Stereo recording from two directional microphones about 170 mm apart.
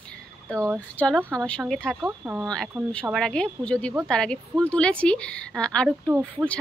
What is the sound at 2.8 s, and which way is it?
A woman's voice, centre (ahead or behind).